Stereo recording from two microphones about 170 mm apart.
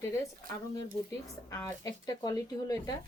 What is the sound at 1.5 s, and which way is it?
Speech, 20° left (ahead or behind).